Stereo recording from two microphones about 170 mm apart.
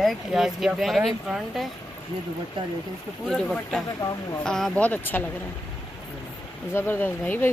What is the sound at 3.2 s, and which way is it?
Speech, 5° left (ahead or behind).